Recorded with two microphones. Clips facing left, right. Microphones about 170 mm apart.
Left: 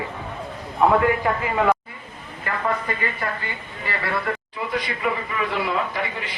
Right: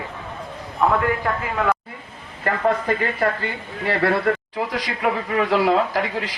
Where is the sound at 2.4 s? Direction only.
55° right (ahead or behind).